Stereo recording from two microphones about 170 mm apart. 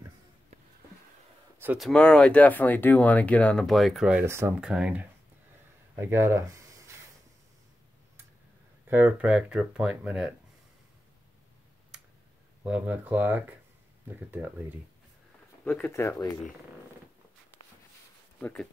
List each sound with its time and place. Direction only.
1.8 s speech: 5° left (ahead or behind)
5.9 s a sound: 15° right (ahead or behind)
8.9 s speech: 10° right (ahead or behind)
11.9 s tick: 5° right (ahead or behind)
12.6 s speech: 10° right (ahead or behind)
15.6 s speech: 10° left (ahead or behind)
18.4 s speech: 10° left (ahead or behind)